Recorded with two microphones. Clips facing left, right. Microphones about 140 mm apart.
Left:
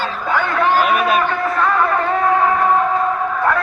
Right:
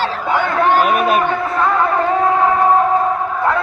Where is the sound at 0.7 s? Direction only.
50° right (ahead or behind).